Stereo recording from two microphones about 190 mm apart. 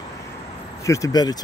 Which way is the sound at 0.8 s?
15° left (ahead or behind).